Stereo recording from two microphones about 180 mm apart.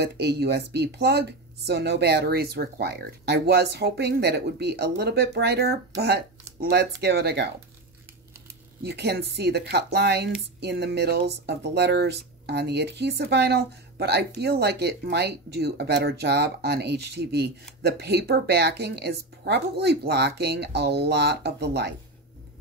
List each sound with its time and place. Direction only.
0.0 s speech: 65° right (ahead or behind)
8.8 s speech: 65° right (ahead or behind)